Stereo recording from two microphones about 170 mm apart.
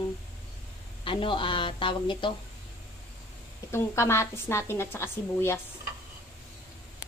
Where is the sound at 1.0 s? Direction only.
30° left (ahead or behind).